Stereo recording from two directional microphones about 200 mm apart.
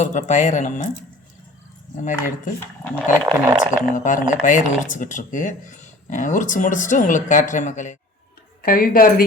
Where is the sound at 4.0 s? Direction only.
40° left (ahead or behind).